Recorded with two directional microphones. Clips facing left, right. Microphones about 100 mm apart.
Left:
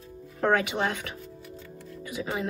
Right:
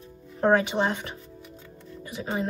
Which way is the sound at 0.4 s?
25° right (ahead or behind).